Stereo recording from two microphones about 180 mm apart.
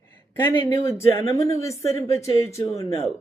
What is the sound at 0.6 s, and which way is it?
Speech, 15° left (ahead or behind).